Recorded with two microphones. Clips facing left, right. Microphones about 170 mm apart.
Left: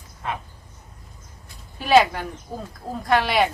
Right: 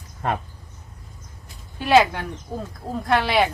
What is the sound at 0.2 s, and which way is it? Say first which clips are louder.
Speech: right 5 dB; 50° right (ahead or behind).